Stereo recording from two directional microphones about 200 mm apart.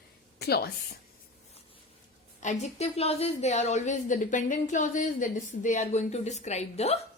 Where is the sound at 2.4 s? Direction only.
35° left (ahead or behind).